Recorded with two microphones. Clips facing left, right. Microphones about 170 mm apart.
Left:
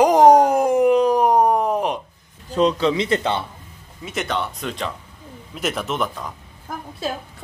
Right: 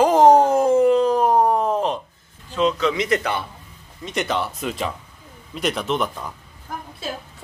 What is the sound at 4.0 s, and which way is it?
Speech, centre (ahead or behind).